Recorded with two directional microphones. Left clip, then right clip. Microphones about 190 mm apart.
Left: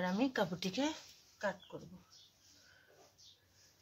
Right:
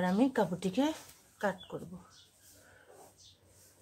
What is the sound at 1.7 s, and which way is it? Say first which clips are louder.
Speech: right 7 dB; 35° right (ahead or behind).